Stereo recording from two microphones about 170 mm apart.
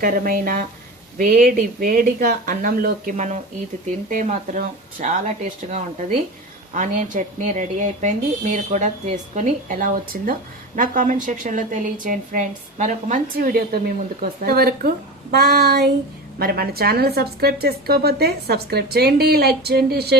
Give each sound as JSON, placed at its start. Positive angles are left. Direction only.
{"t": 0.0, "sound": "a woman's voice", "side_deg": -55}
{"t": 16.4, "sound": "a woman's voice", "side_deg": -65}